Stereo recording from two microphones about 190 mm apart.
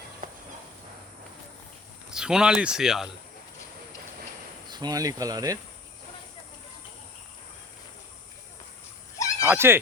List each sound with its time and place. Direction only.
2.0 s speech: 5° right (ahead or behind)
4.7 s cricket: 20° right (ahead or behind)
9.1 s a sound: 15° left (ahead or behind)
9.5 s speech: 10° right (ahead or behind)